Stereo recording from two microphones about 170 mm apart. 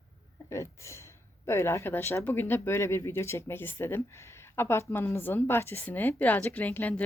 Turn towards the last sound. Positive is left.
turn(degrees=10)  # may be behind; listen again after turning